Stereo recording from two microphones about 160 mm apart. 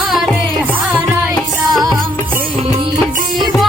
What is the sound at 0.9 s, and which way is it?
Music, 5° left (ahead or behind).